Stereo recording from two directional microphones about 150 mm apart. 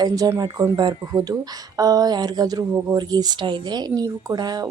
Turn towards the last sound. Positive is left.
turn(degrees=-25)  # may be behind; listen again after turning